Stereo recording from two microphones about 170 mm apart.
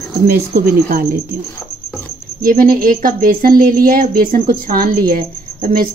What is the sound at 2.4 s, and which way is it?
A woman's voice, 55° right (ahead or behind).